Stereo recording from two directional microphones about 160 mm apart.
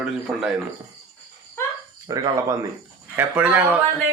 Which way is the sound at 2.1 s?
20° right (ahead or behind).